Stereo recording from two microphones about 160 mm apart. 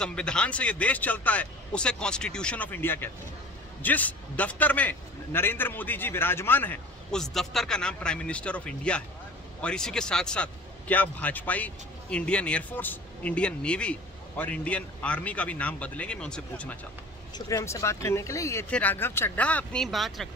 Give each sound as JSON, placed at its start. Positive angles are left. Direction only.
{"t": 0.0, "sound": "a man's voice", "side_deg": 5}
{"t": 17.5, "sound": "a man's voice", "side_deg": 20}